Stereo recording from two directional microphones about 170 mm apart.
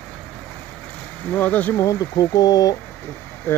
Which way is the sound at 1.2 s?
10° left (ahead or behind).